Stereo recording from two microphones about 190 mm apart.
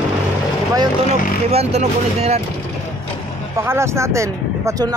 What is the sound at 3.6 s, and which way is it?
Speech, 15° right (ahead or behind).